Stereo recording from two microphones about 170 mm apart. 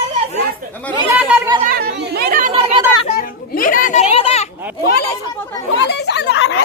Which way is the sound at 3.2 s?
55° left (ahead or behind).